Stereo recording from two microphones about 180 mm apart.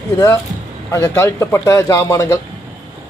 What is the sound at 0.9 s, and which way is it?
Speech, 15° left (ahead or behind).